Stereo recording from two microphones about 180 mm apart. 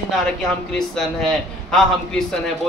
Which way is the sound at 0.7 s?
5° left (ahead or behind).